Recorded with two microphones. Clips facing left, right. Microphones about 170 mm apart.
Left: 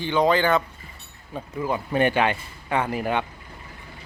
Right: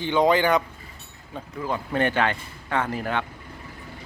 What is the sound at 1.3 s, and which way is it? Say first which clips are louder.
Speech: left 2 dB; 10° left (ahead or behind).